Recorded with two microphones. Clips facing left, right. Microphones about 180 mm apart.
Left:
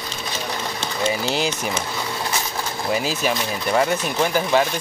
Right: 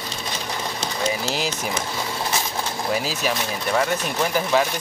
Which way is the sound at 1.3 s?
Centre (ahead or behind).